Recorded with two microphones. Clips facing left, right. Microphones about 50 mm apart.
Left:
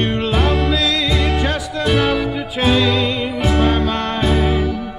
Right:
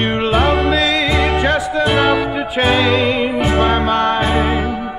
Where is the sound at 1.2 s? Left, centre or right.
Centre.